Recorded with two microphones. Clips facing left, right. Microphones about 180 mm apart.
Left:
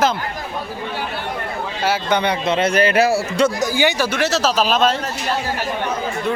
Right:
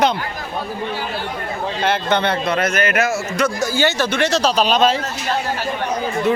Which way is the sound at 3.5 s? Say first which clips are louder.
Even; 15° left (ahead or behind).